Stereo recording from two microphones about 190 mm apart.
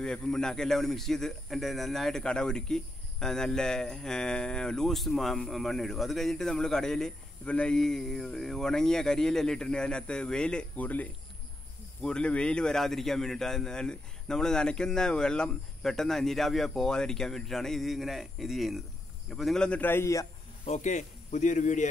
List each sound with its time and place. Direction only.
0.0 s a man's voice: 5° left (ahead or behind)
20.6 s speech: 40° left (ahead or behind)